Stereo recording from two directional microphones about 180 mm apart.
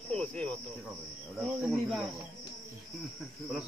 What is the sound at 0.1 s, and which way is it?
Cricket, 5° left (ahead or behind).